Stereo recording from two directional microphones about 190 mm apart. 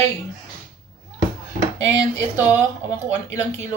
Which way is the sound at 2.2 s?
15° left (ahead or behind).